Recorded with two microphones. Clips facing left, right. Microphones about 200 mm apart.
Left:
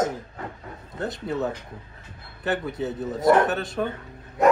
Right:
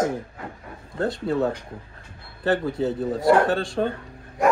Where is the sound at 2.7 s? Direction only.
20° left (ahead or behind).